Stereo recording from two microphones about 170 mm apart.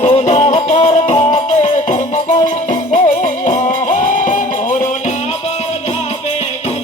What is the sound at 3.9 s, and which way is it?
Music, 50° left (ahead or behind).